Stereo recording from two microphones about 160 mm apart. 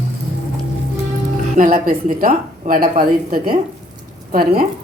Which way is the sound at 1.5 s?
60° right (ahead or behind).